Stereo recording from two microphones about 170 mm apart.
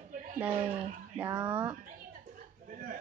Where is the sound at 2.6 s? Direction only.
50° right (ahead or behind).